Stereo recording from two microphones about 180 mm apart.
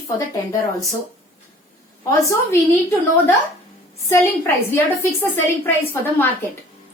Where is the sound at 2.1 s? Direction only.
15° left (ahead or behind).